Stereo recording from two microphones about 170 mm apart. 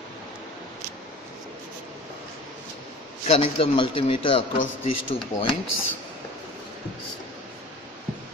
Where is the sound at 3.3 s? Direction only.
35° left (ahead or behind).